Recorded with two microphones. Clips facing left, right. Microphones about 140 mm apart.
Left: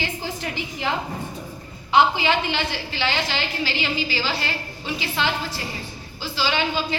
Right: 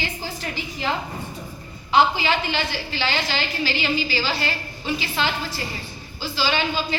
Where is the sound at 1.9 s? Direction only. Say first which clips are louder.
Left 1 dB; 20° left (ahead or behind).